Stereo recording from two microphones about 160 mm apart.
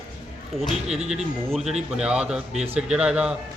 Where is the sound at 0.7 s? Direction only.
40° right (ahead or behind).